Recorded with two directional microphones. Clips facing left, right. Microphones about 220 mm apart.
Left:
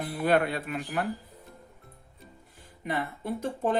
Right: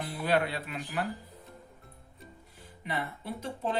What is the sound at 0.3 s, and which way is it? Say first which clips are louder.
Speech: left 4 dB; 50° left (ahead or behind).